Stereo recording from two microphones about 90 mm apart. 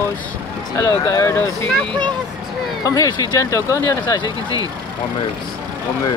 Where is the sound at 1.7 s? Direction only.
10° left (ahead or behind).